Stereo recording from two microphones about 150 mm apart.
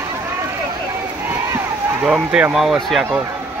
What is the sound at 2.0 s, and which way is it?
Speech, 5° right (ahead or behind).